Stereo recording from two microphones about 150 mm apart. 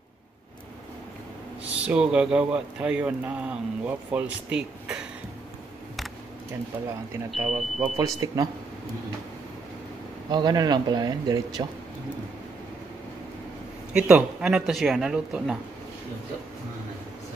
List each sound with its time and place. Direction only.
1.6 s speech: 10° right (ahead or behind)
7.2 s speech: centre (ahead or behind)
8.0 s speech: 25° right (ahead or behind)
10.3 s speech: 25° right (ahead or behind)
13.9 s speech: 5° right (ahead or behind)